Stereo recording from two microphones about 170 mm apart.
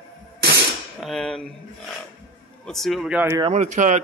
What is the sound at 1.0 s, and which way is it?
Speech, centre (ahead or behind).